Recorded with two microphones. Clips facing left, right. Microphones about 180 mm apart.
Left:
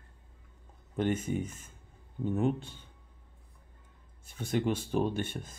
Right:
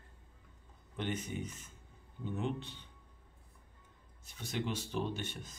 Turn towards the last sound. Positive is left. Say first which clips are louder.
# left 7 dB
turn(degrees=50)  # may be behind; listen again after turning